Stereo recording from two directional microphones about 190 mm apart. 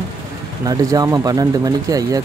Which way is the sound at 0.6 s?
20° right (ahead or behind).